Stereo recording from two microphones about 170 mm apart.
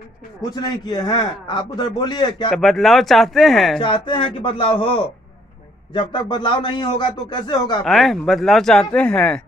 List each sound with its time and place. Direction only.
0.4 s a man's voice: 25° left (ahead or behind)
2.5 s speech: centre (ahead or behind)
3.8 s a man's voice: 30° left (ahead or behind)
7.8 s speech: centre (ahead or behind)